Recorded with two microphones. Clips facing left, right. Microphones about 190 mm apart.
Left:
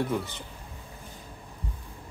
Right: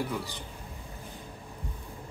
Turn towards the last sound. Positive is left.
turn(degrees=20)  # may be behind; listen again after turning